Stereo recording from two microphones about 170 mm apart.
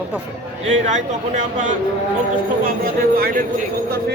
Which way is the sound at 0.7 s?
45° right (ahead or behind).